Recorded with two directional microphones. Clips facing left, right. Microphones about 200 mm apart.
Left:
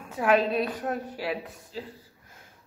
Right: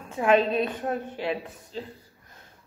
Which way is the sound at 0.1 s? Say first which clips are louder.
Right 2 dB; 5° left (ahead or behind).